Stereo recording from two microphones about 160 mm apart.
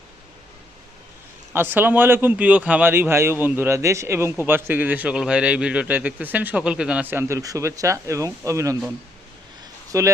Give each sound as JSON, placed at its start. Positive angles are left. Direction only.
{"t": 1.5, "sound": "a man's voice", "side_deg": -10}
{"t": 9.9, "sound": "speech", "side_deg": -20}